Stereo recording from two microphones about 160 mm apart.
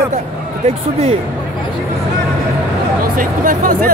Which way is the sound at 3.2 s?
60° right (ahead or behind).